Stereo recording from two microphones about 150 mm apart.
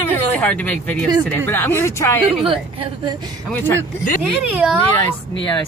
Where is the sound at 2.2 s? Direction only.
40° right (ahead or behind).